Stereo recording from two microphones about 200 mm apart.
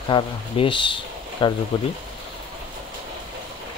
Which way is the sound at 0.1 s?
25° left (ahead or behind).